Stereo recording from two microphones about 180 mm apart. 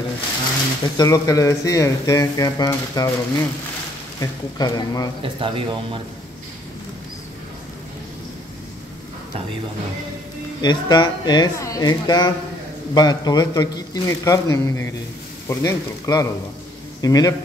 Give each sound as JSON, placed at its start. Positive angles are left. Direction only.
{"t": 0.9, "sound": "speech", "side_deg": 20}
{"t": 5.2, "sound": "speech", "side_deg": -30}
{"t": 10.6, "sound": "speech", "side_deg": 25}